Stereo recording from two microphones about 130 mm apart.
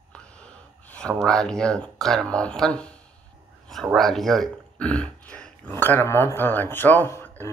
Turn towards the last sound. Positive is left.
turn(degrees=15)  # may be behind; listen again after turning